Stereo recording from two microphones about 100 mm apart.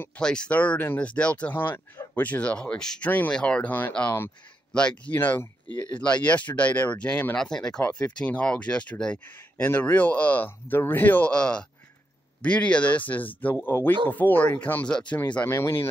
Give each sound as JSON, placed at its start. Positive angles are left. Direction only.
{"t": 0.0, "sound": "speech", "side_deg": 10}
{"t": 5.2, "sound": "speech", "side_deg": 20}
{"t": 9.2, "sound": "speech", "side_deg": 20}
{"t": 15.4, "sound": "speech", "side_deg": 25}